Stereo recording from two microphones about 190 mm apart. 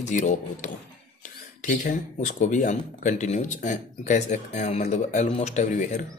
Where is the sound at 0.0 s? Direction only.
40° left (ahead or behind).